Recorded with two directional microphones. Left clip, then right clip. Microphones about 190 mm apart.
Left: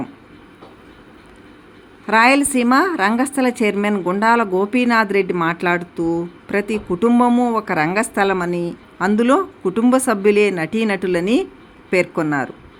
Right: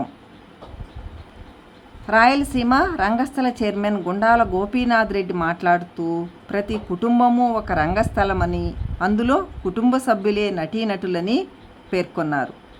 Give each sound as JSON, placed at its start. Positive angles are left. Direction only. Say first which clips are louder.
{"t": 2.0, "sound": "speech", "louder": "left 2 dB", "side_deg": 10}